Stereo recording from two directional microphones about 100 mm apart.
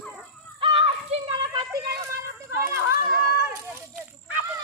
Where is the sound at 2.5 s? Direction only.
25° right (ahead or behind).